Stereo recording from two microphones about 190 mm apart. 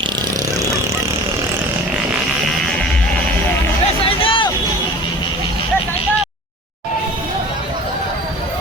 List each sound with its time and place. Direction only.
4.2 s music: 30° left (ahead or behind)